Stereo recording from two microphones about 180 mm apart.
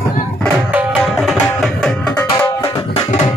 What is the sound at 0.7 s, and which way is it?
Tabla, 5° right (ahead or behind).